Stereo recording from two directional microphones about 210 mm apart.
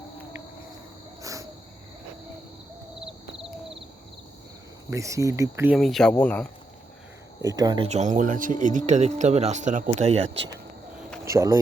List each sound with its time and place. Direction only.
1.2 s cricket: 15° right (ahead or behind)
4.9 s speech: 15° right (ahead or behind)
5.7 s speech: centre (ahead or behind)
7.4 s speech: 20° right (ahead or behind)
7.9 s speech: 35° right (ahead or behind)
11.3 s speech: 15° right (ahead or behind)